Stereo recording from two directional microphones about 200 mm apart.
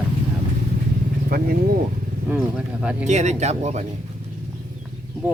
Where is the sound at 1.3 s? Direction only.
50° right (ahead or behind).